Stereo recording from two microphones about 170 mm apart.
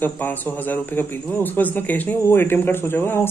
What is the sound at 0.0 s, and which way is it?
A man's voice, 10° left (ahead or behind).